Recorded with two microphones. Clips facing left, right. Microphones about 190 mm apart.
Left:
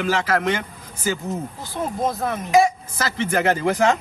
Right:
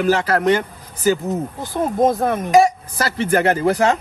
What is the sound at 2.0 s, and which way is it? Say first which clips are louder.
Speech: right 8 dB; 55° right (ahead or behind).